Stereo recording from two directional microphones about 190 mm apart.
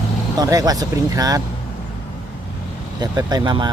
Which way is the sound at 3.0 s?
20° right (ahead or behind).